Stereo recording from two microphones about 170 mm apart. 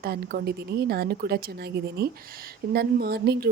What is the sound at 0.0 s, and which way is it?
A woman's voice, 65° right (ahead or behind).